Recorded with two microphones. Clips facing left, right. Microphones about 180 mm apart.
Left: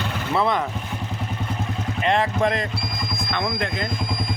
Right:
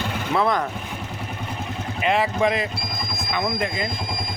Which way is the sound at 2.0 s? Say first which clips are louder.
Even; 5° right (ahead or behind).